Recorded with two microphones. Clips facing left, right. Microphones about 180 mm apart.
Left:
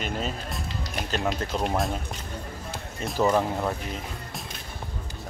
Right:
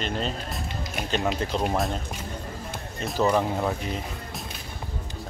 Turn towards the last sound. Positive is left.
turn(degrees=0)  # may be behind; listen again after turning